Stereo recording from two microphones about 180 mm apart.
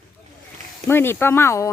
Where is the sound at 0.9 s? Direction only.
10° left (ahead or behind).